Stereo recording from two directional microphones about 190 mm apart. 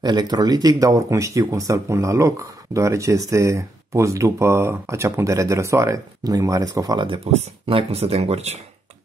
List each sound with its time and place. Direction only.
0.0 s speech: 20° right (ahead or behind)